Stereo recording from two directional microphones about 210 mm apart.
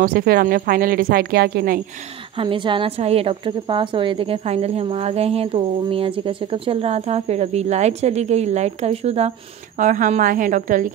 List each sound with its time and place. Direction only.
0.0 s speech: 45° right (ahead or behind)
2.3 s a woman's voice: 25° right (ahead or behind); by 10.9 s 40° right (ahead or behind)